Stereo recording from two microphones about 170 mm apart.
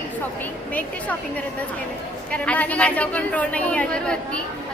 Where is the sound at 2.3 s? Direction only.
10° left (ahead or behind).